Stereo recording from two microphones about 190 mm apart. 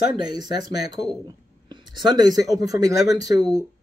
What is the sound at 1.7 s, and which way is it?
Speech, 20° right (ahead or behind).